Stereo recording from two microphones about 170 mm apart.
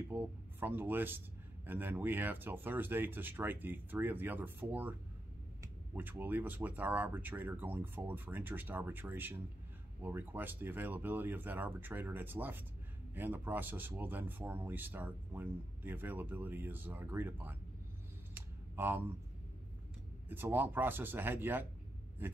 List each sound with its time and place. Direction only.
0.1 s speech: 10° right (ahead or behind)
18.3 s a sound: 10° right (ahead or behind)
20.2 s speech: 10° right (ahead or behind)